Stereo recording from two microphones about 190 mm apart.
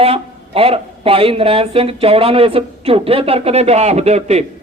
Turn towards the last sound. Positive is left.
turn(degrees=-35)  # may be behind; listen again after turning